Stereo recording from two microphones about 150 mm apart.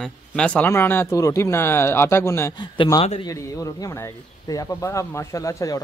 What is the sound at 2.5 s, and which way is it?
Speech, 30° left (ahead or behind).